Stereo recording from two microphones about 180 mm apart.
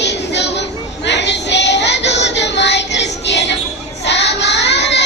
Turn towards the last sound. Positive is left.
turn(degrees=75)  # may be behind; listen again after turning